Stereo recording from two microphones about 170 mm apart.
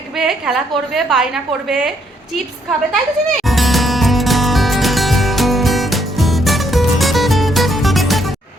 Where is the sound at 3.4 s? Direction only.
Centre (ahead or behind).